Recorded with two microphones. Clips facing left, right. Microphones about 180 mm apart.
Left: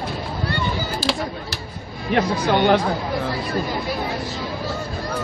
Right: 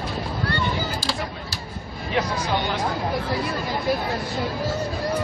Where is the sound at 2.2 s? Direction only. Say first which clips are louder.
Left 5 dB; 60° left (ahead or behind).